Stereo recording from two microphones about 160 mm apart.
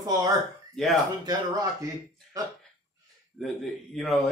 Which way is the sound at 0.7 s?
Centre (ahead or behind).